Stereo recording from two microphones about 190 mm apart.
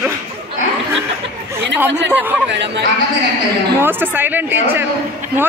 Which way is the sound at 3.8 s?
10° right (ahead or behind).